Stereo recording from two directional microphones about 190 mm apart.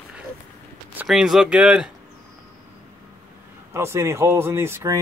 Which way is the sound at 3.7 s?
15° right (ahead or behind).